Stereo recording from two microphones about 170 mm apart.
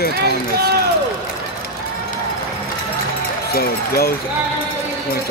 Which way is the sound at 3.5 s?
65° left (ahead or behind).